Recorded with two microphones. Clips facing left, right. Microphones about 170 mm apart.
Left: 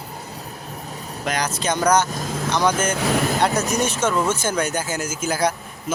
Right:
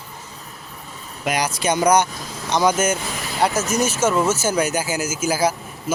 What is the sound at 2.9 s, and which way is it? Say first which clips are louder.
Speech: left 9 dB; 65° left (ahead or behind).